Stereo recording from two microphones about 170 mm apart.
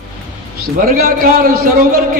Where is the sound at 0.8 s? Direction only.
60° right (ahead or behind).